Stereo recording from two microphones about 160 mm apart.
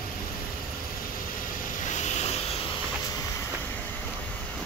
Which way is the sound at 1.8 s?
50° left (ahead or behind).